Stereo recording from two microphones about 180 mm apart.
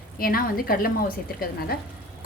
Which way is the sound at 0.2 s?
55° left (ahead or behind).